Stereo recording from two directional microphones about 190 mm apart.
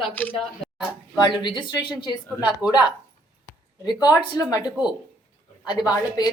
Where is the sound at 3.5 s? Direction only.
20° left (ahead or behind).